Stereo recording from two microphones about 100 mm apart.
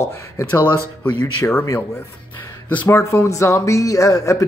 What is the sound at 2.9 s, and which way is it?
Speech, 30° left (ahead or behind).